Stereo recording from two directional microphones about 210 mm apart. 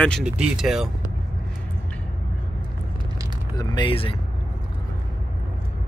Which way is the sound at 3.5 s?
20° left (ahead or behind).